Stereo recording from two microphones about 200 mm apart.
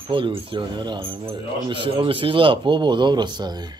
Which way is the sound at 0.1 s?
25° right (ahead or behind).